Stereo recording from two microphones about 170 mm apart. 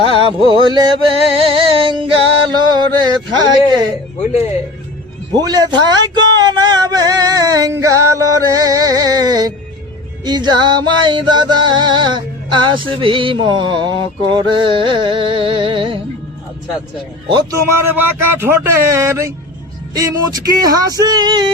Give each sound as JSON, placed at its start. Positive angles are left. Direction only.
{"t": 0.1, "sound": "music", "side_deg": -30}
{"t": 5.3, "sound": "music", "side_deg": -20}
{"t": 6.3, "sound": "male singing", "side_deg": -25}
{"t": 10.2, "sound": "music", "side_deg": -25}
{"t": 17.2, "sound": "music", "side_deg": -25}
{"t": 17.7, "sound": "speech", "side_deg": -15}
{"t": 19.9, "sound": "music", "side_deg": -20}